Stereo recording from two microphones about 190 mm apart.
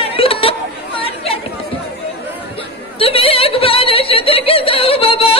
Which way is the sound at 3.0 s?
30° left (ahead or behind).